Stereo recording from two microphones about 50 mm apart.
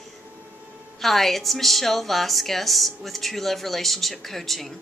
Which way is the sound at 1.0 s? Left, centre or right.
Centre.